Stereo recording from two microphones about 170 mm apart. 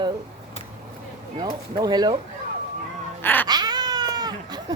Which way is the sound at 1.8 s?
25° right (ahead or behind).